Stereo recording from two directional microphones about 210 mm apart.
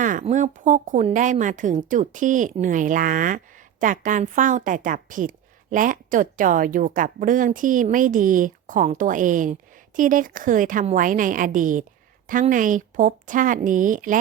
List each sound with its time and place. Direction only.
0.0 s speech: 40° right (ahead or behind)